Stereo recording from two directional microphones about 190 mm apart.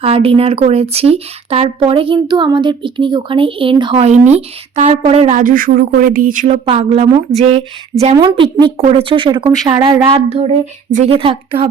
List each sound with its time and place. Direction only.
0.0 s a woman's voice: 30° right (ahead or behind)
6.7 s a woman's voice: 30° right (ahead or behind)
8.1 s speech: 20° right (ahead or behind)